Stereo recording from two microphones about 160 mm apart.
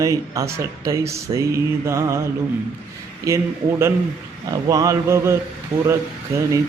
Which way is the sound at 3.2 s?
15° right (ahead or behind).